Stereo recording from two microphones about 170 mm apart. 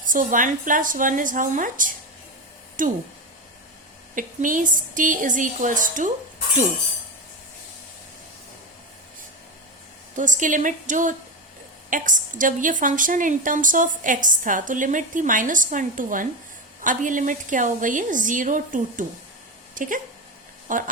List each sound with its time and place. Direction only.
0.0 s a woman's voice: 50° right (ahead or behind)
4.1 s a woman's voice: 50° right (ahead or behind)
10.2 s a woman's voice: 50° right (ahead or behind)